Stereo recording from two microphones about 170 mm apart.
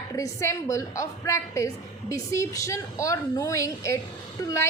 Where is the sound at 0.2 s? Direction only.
15° left (ahead or behind).